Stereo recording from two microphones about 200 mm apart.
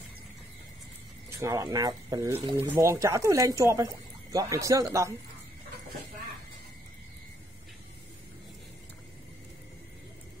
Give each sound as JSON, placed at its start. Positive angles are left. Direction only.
{"t": 1.4, "sound": "speech", "side_deg": -15}